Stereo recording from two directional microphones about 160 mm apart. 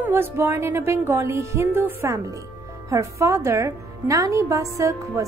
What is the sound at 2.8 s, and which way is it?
A woman's voice, 20° right (ahead or behind).